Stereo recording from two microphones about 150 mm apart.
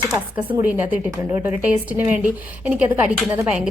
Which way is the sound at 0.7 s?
10° right (ahead or behind).